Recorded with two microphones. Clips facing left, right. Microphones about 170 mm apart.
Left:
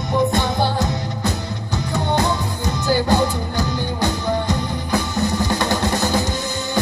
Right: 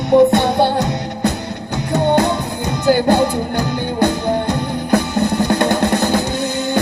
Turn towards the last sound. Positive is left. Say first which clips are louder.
# right 6 dB
turn(degrees=-60)  # may be behind; listen again after turning